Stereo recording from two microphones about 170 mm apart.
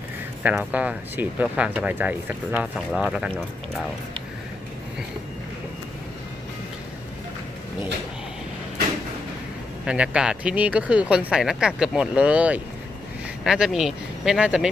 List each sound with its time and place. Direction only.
0.4 s speech: 10° right (ahead or behind)
9.8 s speech: 5° right (ahead or behind)